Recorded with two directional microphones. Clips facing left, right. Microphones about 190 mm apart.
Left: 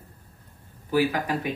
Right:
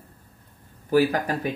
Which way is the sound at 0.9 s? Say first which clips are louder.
Right 3 dB; 45° right (ahead or behind).